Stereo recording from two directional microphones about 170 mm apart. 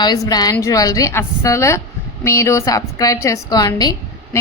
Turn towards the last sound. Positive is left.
turn(degrees=20)  # may be behind; listen again after turning